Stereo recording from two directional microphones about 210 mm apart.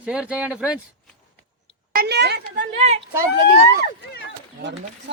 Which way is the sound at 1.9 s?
50° right (ahead or behind).